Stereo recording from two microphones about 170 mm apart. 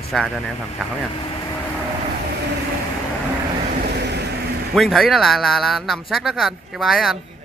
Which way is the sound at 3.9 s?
75° right (ahead or behind).